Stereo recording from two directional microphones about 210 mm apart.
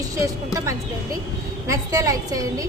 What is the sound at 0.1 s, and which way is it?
A woman's voice, 15° right (ahead or behind).